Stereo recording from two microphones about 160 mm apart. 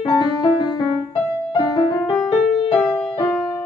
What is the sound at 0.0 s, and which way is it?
Music, 25° left (ahead or behind).